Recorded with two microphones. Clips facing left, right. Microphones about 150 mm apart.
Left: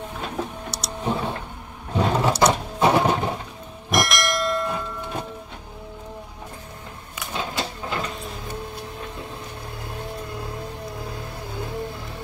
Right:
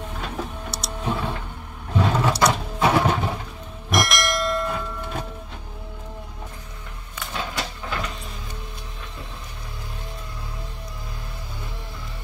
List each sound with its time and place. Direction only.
0.7 s vehicle: centre (ahead or behind)
1.0 s power windows: 20° left (ahead or behind)
2.0 s vehicle: 20° left (ahead or behind)
2.4 s a sound: 20° left (ahead or behind)
3.9 s bell: centre (ahead or behind)
7.3 s a sound: 25° left (ahead or behind)